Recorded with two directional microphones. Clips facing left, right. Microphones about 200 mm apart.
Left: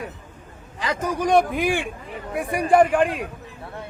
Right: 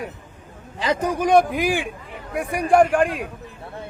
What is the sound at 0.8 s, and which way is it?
Speech, 25° right (ahead or behind).